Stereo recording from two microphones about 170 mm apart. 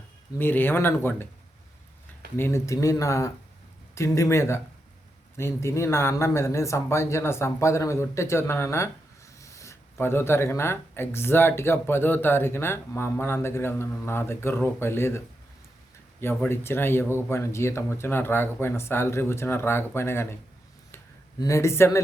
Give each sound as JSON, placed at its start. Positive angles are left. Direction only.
{"t": 0.3, "sound": "speech", "side_deg": 10}
{"t": 2.3, "sound": "speech", "side_deg": 15}
{"t": 16.2, "sound": "speech", "side_deg": 15}
{"t": 21.4, "sound": "speech", "side_deg": 15}